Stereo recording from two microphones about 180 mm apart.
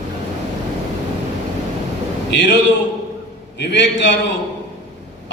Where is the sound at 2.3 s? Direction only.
75° left (ahead or behind).